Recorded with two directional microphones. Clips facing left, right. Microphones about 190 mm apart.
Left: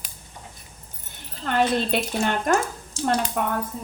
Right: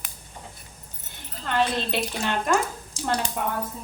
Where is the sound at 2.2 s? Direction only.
50° left (ahead or behind).